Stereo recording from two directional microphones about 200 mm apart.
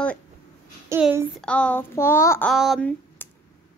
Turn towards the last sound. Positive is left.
turn(degrees=5)  # may be behind; listen again after turning